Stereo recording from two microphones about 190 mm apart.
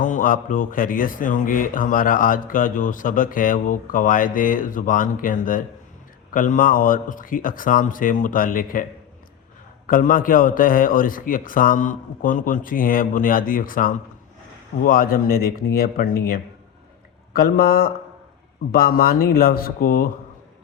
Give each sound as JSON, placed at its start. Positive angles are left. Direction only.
{"t": 0.0, "sound": "speech", "side_deg": 45}